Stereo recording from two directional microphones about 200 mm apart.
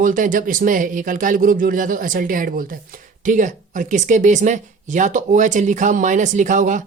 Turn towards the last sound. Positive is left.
turn(degrees=-40)  # may be behind; listen again after turning